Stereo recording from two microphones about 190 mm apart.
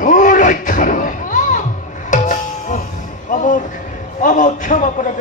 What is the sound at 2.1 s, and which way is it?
Tabla, 40° left (ahead or behind).